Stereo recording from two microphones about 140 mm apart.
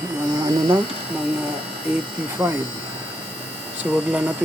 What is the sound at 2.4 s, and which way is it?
Speech, 15° right (ahead or behind).